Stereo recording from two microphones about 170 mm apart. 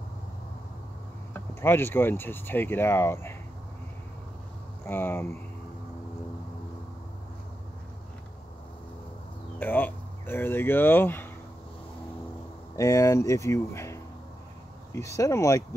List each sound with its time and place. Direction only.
1.3 s speech: 15° left (ahead or behind)
4.8 s speech: 10° left (ahead or behind)
9.6 s speech: 10° left (ahead or behind)
12.7 s speech: 20° left (ahead or behind)
15.0 s speech: 15° left (ahead or behind)